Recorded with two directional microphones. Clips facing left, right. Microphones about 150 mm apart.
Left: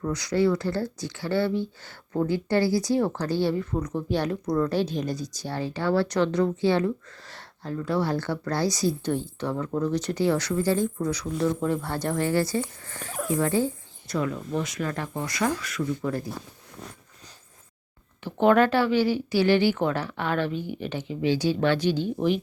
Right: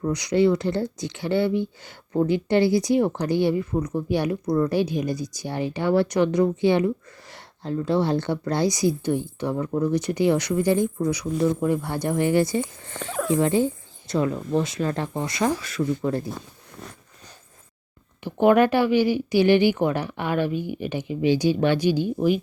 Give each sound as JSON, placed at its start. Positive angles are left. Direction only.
{"t": 0.0, "sound": "speech", "side_deg": -15}
{"t": 18.2, "sound": "speech", "side_deg": -15}